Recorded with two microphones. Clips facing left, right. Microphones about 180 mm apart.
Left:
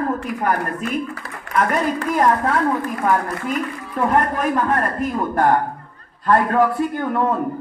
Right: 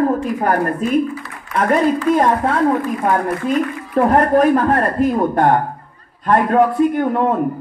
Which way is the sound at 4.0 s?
35° right (ahead or behind).